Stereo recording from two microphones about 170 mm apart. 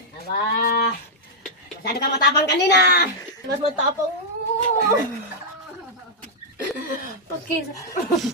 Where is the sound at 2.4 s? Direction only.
75° left (ahead or behind).